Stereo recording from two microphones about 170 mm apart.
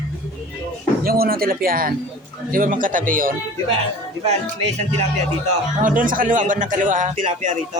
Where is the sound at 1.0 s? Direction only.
60° right (ahead or behind).